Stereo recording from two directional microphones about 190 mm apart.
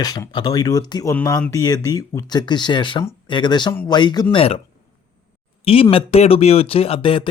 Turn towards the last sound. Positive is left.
turn(degrees=30)  # may be behind; listen again after turning